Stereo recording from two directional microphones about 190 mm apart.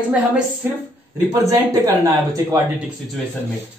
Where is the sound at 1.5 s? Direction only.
20° right (ahead or behind).